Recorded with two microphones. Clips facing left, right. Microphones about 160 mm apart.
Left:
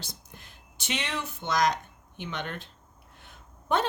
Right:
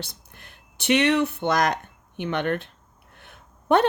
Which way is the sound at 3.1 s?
60° right (ahead or behind).